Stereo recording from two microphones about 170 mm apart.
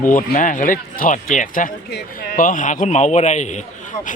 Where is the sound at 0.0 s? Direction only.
50° left (ahead or behind).